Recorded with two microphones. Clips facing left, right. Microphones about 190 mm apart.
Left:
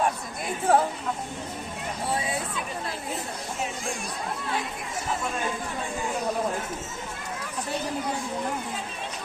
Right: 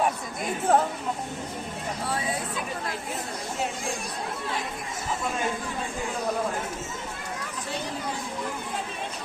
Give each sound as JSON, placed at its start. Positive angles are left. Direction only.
{"t": 0.7, "sound": "a woman's voice", "side_deg": 10}